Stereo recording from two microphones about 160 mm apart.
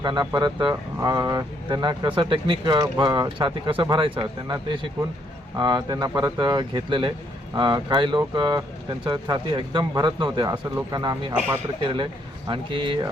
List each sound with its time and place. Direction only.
0.0 s speech: 25° right (ahead or behind)
12.5 s speech: 30° right (ahead or behind)